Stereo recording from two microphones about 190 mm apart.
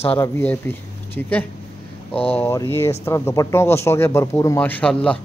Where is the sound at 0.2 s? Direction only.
10° left (ahead or behind).